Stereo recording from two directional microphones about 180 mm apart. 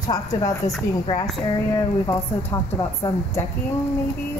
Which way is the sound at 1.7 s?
20° left (ahead or behind).